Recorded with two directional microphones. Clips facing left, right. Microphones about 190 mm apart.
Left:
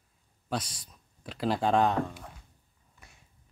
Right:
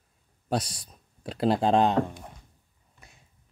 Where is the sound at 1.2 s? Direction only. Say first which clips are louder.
Right 4 dB; 35° right (ahead or behind).